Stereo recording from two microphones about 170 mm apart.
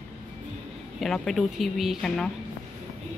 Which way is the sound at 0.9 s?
Centre (ahead or behind).